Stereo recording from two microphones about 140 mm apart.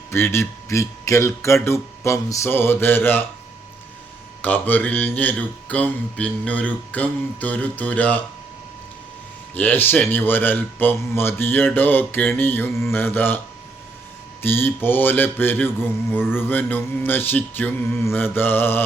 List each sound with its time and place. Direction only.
0.1 s a man's voice: 20° left (ahead or behind)
4.4 s mantra: 10° left (ahead or behind)
9.6 s mantra: 15° left (ahead or behind)
14.4 s mantra: 15° left (ahead or behind)